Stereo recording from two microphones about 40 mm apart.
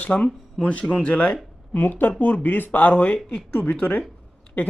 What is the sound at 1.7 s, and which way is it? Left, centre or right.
Speech, left.